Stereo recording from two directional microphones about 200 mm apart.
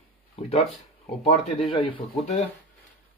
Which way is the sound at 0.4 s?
30° left (ahead or behind).